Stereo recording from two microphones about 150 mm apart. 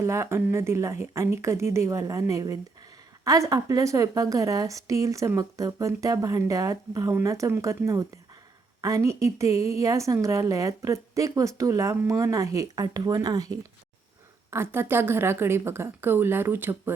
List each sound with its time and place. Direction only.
0.0 s a woman's voice: 20° right (ahead or behind)